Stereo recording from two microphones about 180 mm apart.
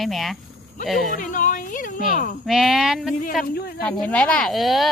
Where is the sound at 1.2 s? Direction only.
45° left (ahead or behind).